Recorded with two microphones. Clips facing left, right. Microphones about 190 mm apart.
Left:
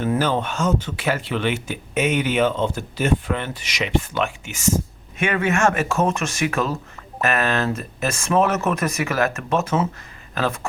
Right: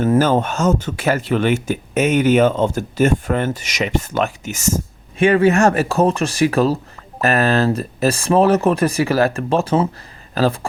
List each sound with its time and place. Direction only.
0.0 s speech: 45° right (ahead or behind)